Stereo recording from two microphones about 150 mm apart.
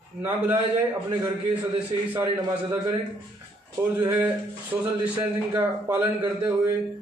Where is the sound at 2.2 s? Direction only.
20° right (ahead or behind).